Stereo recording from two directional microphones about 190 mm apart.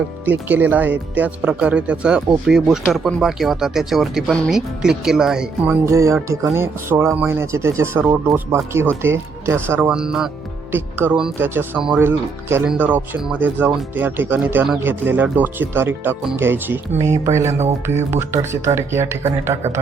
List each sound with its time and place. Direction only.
0.3 s speech: 10° right (ahead or behind)
5.8 s speech: 15° right (ahead or behind)